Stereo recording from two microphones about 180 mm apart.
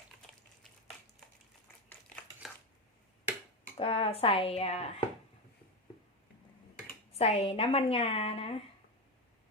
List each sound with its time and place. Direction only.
2.4 s a sound: centre (ahead or behind)
3.8 s a woman's voice: 30° left (ahead or behind)
7.2 s a woman's voice: 35° left (ahead or behind)